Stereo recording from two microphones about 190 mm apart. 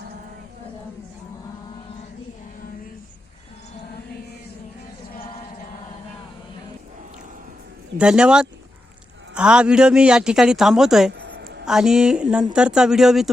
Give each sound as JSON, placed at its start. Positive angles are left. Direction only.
{"t": 7.9, "sound": "a man's voice", "side_deg": -5}
{"t": 11.1, "sound": "a sound", "side_deg": -70}
{"t": 11.6, "sound": "a man's voice", "side_deg": -5}